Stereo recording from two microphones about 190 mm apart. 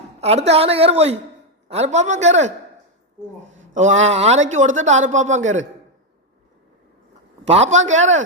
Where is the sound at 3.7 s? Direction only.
40° right (ahead or behind).